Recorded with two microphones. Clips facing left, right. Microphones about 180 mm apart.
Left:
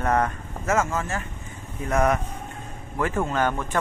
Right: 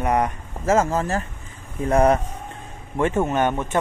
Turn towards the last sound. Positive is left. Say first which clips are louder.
# right 3 dB
turn(degrees=-20)  # may be behind; listen again after turning